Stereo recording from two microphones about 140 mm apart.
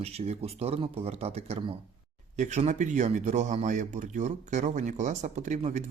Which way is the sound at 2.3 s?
55° right (ahead or behind).